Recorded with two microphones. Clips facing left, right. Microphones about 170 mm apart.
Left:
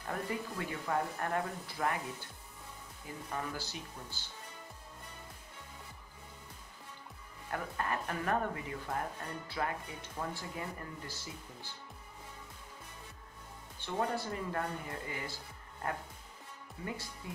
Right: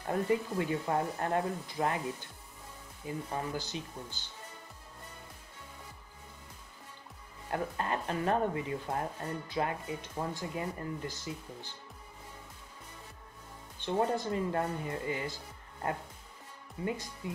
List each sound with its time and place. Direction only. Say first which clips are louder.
0.0 s speech: right 7 dB; 25° right (ahead or behind)
3.3 s speech: even; 20° right (ahead or behind)
7.5 s speech: right 3 dB; 25° right (ahead or behind)
13.7 s speech: right 5 dB; 25° right (ahead or behind)
16.8 s speech: right 6 dB; 15° right (ahead or behind)